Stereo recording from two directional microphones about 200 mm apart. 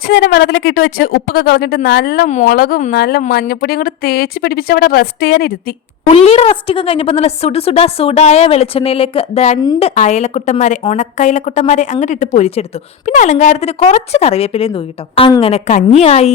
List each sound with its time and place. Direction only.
0.1 s a woman's voice: 45° left (ahead or behind)
6.1 s a woman's voice: 30° left (ahead or behind)